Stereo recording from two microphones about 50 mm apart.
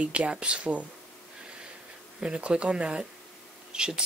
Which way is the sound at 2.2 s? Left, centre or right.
Centre.